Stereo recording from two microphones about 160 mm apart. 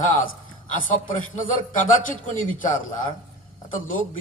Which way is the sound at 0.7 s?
55° left (ahead or behind).